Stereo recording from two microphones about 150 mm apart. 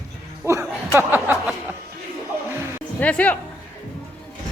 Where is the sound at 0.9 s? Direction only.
15° right (ahead or behind).